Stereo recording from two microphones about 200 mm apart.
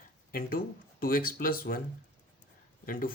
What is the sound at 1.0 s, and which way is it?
Speech, 45° left (ahead or behind).